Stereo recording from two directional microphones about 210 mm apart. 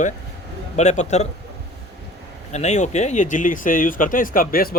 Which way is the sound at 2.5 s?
35° left (ahead or behind).